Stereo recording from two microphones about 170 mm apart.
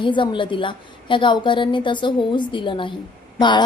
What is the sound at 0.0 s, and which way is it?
A woman's voice, 30° left (ahead or behind).